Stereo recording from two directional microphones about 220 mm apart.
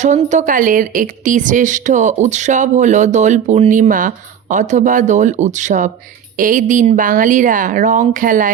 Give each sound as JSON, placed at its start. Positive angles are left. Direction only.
{"t": 0.0, "sound": "speech", "side_deg": -35}